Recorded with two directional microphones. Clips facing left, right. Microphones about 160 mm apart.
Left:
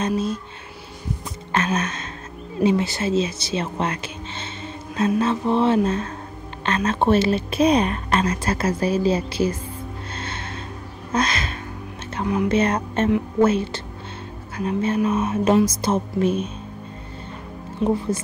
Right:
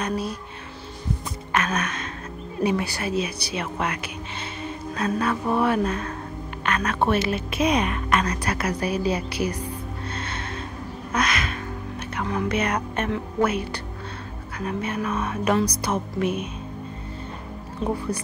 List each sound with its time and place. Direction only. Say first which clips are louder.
0.0 s a woman's voice: left 4 dB; 25° left (ahead or behind)
1.5 s gasp: left 2 dB; 30° left (ahead or behind)
2.6 s a woman's voice: left 4 dB; 20° left (ahead or behind)
10.1 s music: left 1 dB; 30° left (ahead or behind)
11.1 s a sound: left 2 dB; 30° left (ahead or behind)
12.4 s a woman's voice: left 6 dB; 30° left (ahead or behind)